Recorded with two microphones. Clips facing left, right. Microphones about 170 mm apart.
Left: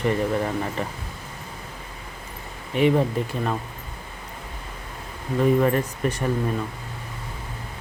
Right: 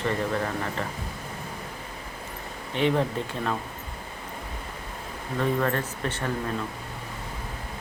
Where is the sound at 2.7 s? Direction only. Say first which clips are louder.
Left 4 dB; 5° left (ahead or behind).